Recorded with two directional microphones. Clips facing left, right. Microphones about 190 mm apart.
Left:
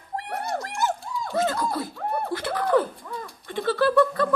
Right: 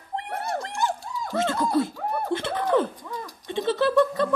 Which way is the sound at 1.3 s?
20° right (ahead or behind).